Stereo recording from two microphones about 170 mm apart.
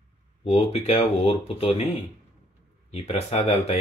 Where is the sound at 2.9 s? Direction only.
40° left (ahead or behind).